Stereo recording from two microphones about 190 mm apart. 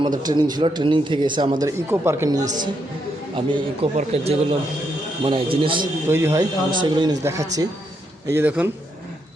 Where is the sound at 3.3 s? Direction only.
25° right (ahead or behind).